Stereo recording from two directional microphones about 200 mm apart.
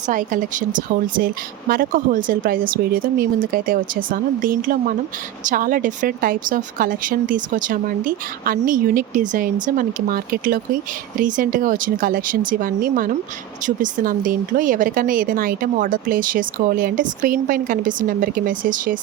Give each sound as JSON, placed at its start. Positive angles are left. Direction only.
{"t": 0.1, "sound": "speech", "side_deg": -40}